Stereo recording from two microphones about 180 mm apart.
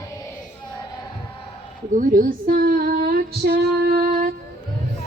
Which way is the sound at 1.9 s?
50° right (ahead or behind).